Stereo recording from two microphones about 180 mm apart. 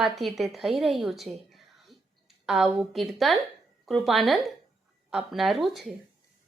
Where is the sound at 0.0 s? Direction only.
Centre (ahead or behind).